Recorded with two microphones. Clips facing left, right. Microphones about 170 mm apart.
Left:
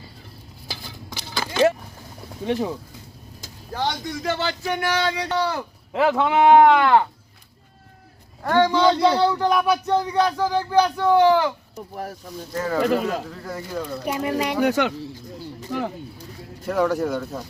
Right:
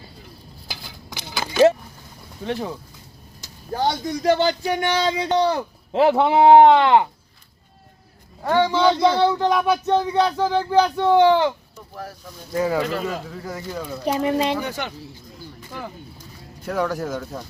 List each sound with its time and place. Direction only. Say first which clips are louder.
2.4 s speech: left 3 dB; 10° left (ahead or behind)
3.7 s speech: right 4 dB; 40° right (ahead or behind); by 7.1 s 20° right (ahead or behind)
8.4 s speech: even; 15° right (ahead or behind)
12.5 s speech: right 3 dB; 15° right (ahead or behind)
13.0 s speech: left 2 dB; centre (ahead or behind)
14.0 s speech: right 5 dB; 30° right (ahead or behind)
14.6 s speech: left 9 dB; 75° left (ahead or behind)
16.6 s speech: left 3 dB; centre (ahead or behind)